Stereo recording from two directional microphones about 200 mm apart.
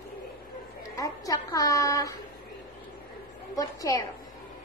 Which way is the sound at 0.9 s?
15° left (ahead or behind).